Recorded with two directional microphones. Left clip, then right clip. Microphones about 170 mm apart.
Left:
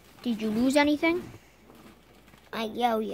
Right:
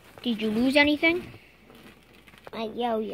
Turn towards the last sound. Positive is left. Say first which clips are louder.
# left 1 dB
turn(degrees=35)  # may be behind; listen again after turning